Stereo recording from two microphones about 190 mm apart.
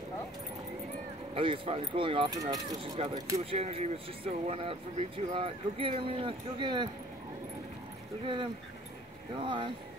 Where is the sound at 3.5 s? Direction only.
30° right (ahead or behind).